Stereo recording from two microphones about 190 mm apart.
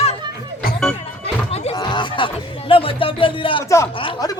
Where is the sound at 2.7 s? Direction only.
30° left (ahead or behind).